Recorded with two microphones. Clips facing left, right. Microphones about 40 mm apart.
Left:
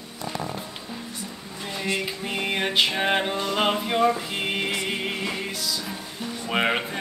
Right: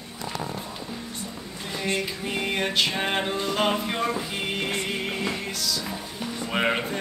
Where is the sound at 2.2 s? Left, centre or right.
Centre.